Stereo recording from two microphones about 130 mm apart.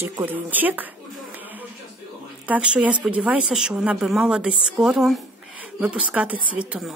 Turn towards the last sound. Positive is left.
turn(degrees=-10)  # may be behind; listen again after turning